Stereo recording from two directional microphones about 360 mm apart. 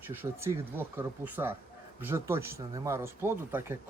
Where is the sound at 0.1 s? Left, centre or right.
Centre.